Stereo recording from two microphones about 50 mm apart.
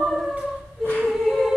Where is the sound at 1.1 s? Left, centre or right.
Centre.